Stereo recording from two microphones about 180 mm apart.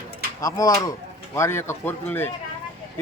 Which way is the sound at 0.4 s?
20° left (ahead or behind).